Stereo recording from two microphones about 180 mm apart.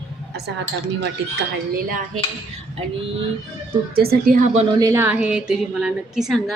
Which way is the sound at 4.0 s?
55° right (ahead or behind).